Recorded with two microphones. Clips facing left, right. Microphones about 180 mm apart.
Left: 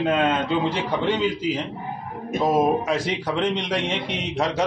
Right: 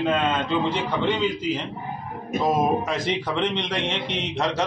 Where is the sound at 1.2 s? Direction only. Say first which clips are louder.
Left 1 dB; 10° left (ahead or behind).